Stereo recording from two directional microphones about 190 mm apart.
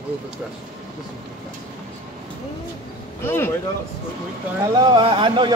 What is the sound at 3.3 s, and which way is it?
Speech, 10° left (ahead or behind).